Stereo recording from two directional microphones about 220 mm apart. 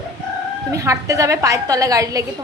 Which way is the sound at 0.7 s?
15° right (ahead or behind).